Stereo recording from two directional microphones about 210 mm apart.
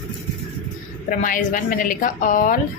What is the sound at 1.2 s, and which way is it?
A woman's voice, 40° left (ahead or behind).